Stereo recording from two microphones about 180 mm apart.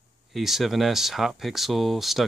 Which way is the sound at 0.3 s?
Centre (ahead or behind).